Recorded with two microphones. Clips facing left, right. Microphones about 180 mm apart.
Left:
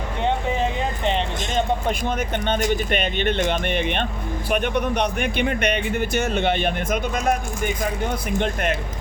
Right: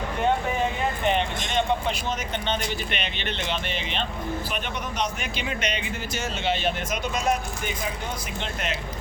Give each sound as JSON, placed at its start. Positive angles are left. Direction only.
{"t": 2.5, "sound": "speech", "side_deg": 45}